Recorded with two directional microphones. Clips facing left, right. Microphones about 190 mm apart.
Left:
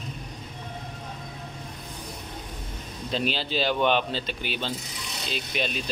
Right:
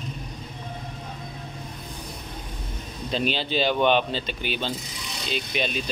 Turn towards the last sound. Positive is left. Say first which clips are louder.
# right 2 dB
turn(degrees=0)  # may be behind; listen again after turning